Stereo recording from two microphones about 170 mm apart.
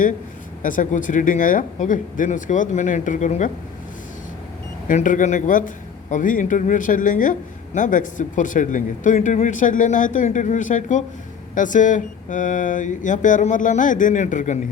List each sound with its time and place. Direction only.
0.6 s a man's voice: 50° left (ahead or behind)
4.9 s a man's voice: 50° left (ahead or behind)